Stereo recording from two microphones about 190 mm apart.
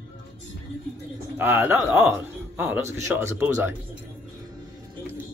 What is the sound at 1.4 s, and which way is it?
Speech, 10° right (ahead or behind).